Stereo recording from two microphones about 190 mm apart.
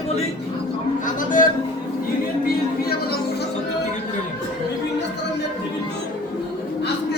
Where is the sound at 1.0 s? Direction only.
45° left (ahead or behind).